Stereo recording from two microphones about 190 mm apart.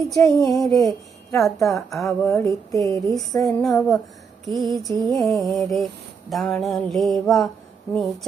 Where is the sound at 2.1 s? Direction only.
15° left (ahead or behind).